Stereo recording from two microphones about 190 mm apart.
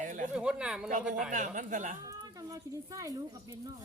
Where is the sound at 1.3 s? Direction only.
40° right (ahead or behind).